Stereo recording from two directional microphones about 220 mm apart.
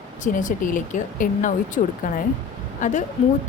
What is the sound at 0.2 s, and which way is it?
Speech, 35° left (ahead or behind).